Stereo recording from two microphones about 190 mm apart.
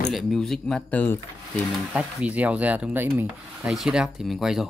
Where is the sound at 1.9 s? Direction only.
5° right (ahead or behind).